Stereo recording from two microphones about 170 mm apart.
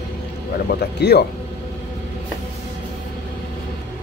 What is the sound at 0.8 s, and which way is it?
Speech, 75° left (ahead or behind).